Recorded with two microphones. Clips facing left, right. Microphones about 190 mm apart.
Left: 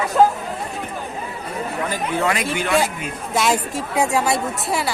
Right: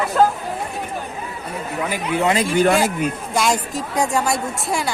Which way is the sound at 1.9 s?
25° right (ahead or behind).